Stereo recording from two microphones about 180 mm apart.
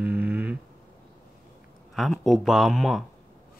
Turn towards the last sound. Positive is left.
turn(degrees=0)  # may be behind; listen again after turning